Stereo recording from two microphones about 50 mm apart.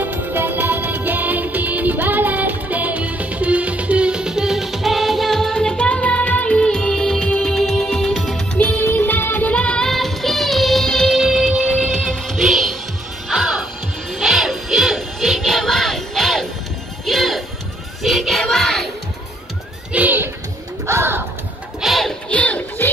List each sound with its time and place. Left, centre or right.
0.0 s music: right; by 7.5 s centre
7.5 s music: centre
8.1 s music: centre
8.5 s music: left
9.5 s music: left
9.8 s music: centre
10.9 s music: centre
19.9 s a sound: right
20.8 s pigeon: right
21.8 s a sound: centre
22.3 s a sound: left